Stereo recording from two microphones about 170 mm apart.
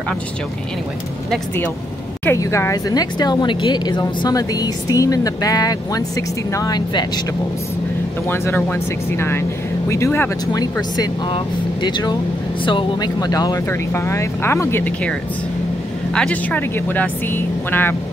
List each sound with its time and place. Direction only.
2.2 s speech: 15° left (ahead or behind)
8.3 s speech: 10° left (ahead or behind)
10.6 s speech: 25° left (ahead or behind)
16.2 s speech: 10° left (ahead or behind)